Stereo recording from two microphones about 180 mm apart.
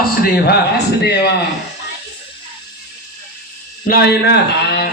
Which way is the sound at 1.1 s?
70° left (ahead or behind).